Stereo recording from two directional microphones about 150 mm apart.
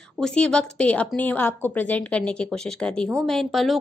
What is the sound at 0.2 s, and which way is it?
A woman's voice, 5° left (ahead or behind).